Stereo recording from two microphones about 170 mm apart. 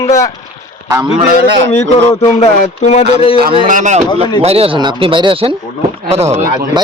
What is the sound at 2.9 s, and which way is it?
Speech, 30° left (ahead or behind).